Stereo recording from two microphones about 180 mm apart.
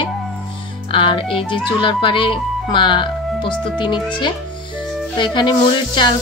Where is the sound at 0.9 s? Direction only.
30° left (ahead or behind).